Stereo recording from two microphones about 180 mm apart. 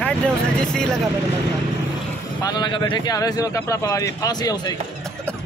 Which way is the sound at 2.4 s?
25° left (ahead or behind).